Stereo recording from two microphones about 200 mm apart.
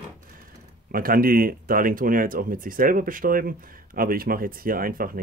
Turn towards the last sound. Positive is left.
turn(degrees=-45)  # may be behind; listen again after turning